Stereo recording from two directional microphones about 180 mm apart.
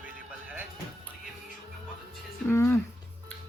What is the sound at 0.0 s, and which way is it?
Music, 10° right (ahead or behind).